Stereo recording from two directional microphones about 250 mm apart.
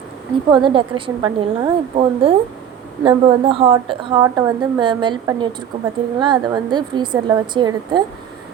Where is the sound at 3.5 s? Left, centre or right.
Centre.